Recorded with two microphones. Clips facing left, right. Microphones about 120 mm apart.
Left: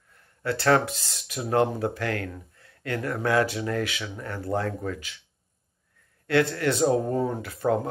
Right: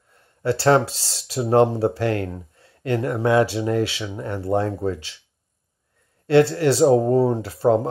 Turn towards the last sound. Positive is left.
turn(degrees=-30)  # may be behind; listen again after turning